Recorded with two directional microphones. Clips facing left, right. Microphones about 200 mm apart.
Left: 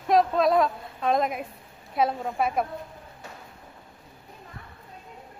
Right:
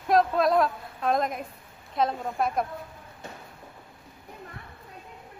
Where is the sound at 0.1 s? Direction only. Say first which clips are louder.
Left 1 dB; centre (ahead or behind).